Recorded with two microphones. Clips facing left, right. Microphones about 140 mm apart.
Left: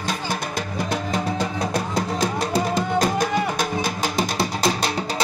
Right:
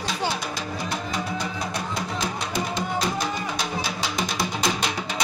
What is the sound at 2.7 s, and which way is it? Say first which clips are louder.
Music: left 4 dB; 45° left (ahead or behind).